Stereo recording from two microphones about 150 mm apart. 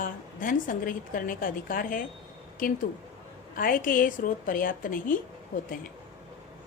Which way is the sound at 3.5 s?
70° left (ahead or behind).